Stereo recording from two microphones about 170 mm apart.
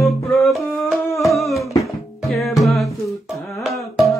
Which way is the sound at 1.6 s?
20° left (ahead or behind).